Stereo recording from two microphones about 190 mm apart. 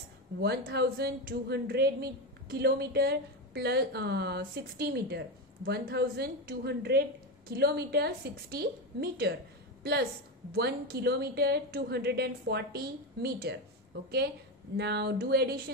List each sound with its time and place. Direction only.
0.4 s speech: 55° right (ahead or behind)
10.5 s speech: 55° right (ahead or behind)
14.8 s speech: 60° right (ahead or behind)